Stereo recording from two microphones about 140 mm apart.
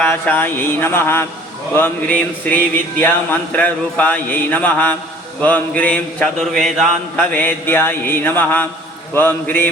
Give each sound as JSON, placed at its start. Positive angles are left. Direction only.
{"t": 0.0, "sound": "mantra", "side_deg": 10}